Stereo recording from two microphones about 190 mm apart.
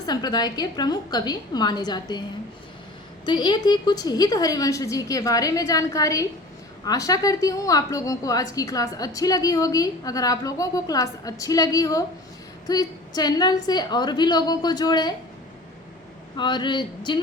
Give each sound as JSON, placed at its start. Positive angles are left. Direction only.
{"t": 0.0, "sound": "a woman's voice", "side_deg": 20}
{"t": 3.2, "sound": "a woman's voice", "side_deg": 25}
{"t": 16.4, "sound": "a woman's voice", "side_deg": 25}